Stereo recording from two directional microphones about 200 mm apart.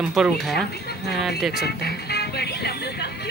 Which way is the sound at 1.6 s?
55° left (ahead or behind).